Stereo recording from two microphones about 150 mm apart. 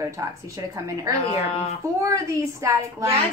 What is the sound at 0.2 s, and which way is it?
Speech, 20° right (ahead or behind).